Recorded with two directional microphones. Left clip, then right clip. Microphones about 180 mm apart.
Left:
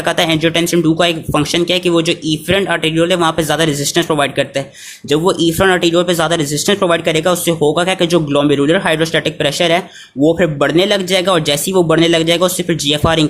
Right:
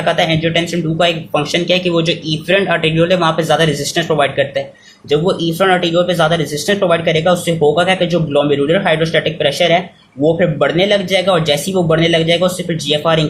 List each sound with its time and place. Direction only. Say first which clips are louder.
0.0 s speech: even; 45° left (ahead or behind)